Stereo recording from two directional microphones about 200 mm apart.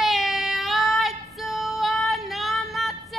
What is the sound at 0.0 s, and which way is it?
Female singing, centre (ahead or behind).